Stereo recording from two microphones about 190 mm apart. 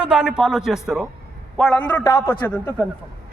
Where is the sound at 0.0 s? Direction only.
5° right (ahead or behind).